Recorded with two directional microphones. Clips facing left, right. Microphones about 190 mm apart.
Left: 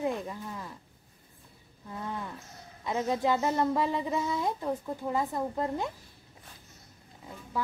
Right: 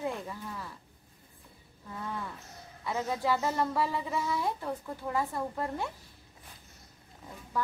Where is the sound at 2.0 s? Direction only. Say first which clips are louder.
Left 1 dB; 15° left (ahead or behind).